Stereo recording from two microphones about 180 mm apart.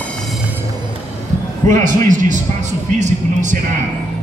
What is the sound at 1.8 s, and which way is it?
A man's voice, 45° right (ahead or behind).